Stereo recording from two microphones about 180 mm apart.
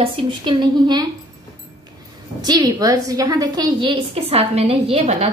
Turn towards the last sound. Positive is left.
turn(degrees=-35)  # may be behind; listen again after turning